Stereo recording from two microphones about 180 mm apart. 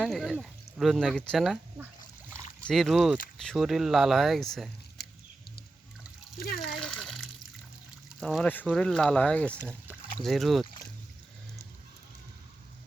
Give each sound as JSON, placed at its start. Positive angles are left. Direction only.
{"t": 0.0, "sound": "speech", "side_deg": 0}
{"t": 2.6, "sound": "speech", "side_deg": 5}
{"t": 6.7, "sound": "water", "side_deg": 5}
{"t": 8.2, "sound": "speech", "side_deg": 0}